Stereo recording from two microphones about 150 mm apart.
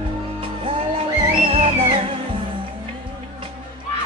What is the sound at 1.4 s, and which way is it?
Music, 45° right (ahead or behind).